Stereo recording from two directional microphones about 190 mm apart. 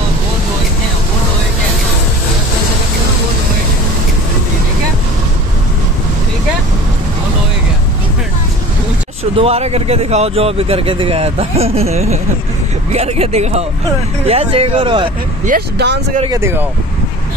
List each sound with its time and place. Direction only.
9.4 s speech: 35° right (ahead or behind)
15.4 s speech: 55° right (ahead or behind)
16.3 s speech: 15° right (ahead or behind)